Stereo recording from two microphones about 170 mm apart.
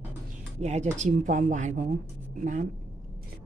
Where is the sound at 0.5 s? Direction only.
40° right (ahead or behind).